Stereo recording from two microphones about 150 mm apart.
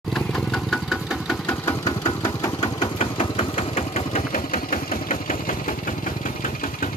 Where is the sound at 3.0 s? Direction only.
40° left (ahead or behind).